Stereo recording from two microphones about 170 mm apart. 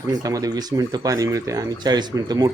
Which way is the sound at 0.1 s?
20° right (ahead or behind).